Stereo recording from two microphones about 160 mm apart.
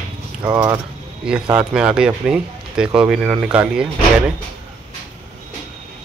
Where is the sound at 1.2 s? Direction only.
5° right (ahead or behind).